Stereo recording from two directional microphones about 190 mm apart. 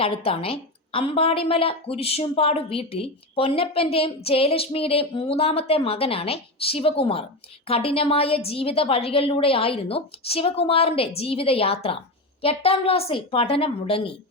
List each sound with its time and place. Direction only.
0.0 s a woman's voice: 30° left (ahead or behind)